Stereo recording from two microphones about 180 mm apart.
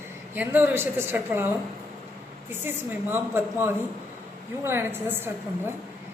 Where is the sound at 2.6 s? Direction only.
10° right (ahead or behind).